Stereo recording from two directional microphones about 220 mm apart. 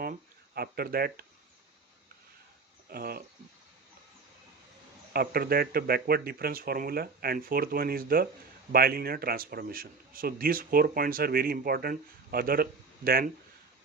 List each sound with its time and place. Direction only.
0.0 s a sound: 45° right (ahead or behind)
2.9 s speech: 45° right (ahead or behind)
5.1 s a man's voice: 45° right (ahead or behind)